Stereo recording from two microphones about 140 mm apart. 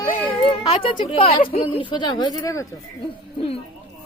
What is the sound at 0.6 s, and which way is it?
Speech, 40° left (ahead or behind).